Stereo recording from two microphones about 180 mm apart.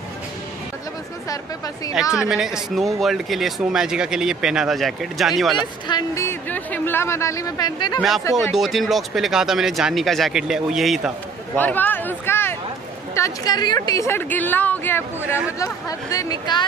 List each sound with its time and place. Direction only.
2.0 s speech: 5° right (ahead or behind)
5.9 s speech: 20° left (ahead or behind)
8.5 s speech: centre (ahead or behind)
11.5 s speech: 10° left (ahead or behind)